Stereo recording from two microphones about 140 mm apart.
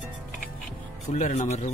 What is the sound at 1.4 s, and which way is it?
Speech, 60° left (ahead or behind).